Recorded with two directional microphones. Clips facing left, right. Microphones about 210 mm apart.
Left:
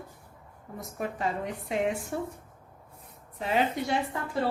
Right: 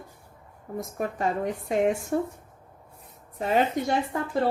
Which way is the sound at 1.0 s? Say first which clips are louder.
Right 4 dB; 45° right (ahead or behind).